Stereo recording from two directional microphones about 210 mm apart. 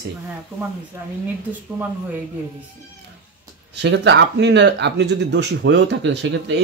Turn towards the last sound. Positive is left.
turn(degrees=-55)  # may be behind; listen again after turning